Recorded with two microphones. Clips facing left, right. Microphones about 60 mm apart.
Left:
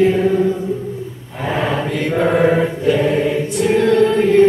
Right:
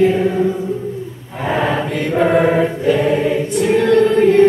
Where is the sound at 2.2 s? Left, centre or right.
Centre.